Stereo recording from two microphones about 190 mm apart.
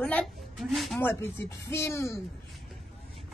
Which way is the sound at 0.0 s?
5° left (ahead or behind).